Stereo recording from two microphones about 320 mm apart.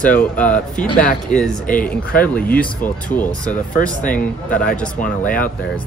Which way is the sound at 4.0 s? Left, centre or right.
Left.